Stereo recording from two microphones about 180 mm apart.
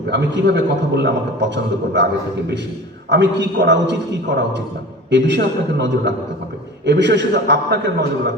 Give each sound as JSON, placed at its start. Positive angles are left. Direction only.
{"t": 0.1, "sound": "a man's voice", "side_deg": -75}
{"t": 3.1, "sound": "a man's voice", "side_deg": -75}